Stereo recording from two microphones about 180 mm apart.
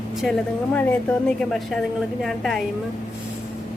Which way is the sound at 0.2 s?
5° left (ahead or behind).